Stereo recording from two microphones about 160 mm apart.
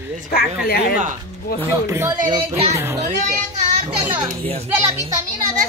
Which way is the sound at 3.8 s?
35° right (ahead or behind).